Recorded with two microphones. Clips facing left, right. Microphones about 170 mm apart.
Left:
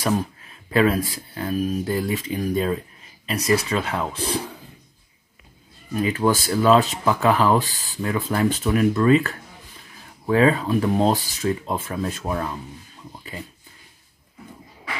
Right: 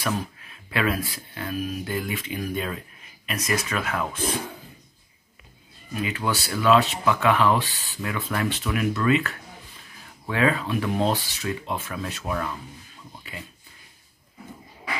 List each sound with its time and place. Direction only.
0.0 s speech: 40° left (ahead or behind)
5.9 s speech: 35° left (ahead or behind)